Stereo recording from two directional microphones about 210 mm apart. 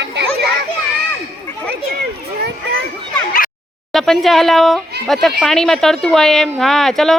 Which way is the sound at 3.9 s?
Centre (ahead or behind).